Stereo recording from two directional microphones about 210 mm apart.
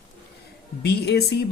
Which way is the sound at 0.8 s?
50° left (ahead or behind).